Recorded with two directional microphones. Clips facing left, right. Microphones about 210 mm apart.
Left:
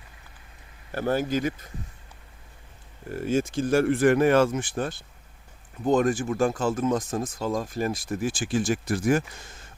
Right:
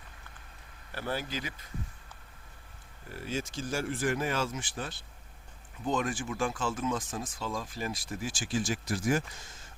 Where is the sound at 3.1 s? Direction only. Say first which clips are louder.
Left 11 dB; 50° left (ahead or behind).